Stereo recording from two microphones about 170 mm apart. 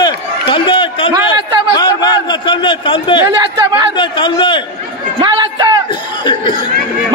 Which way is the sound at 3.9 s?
30° left (ahead or behind).